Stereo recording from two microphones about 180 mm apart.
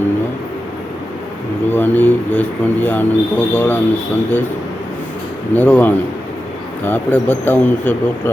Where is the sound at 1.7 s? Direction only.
10° left (ahead or behind).